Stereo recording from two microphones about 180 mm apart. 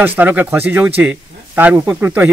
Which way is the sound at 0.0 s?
10° right (ahead or behind).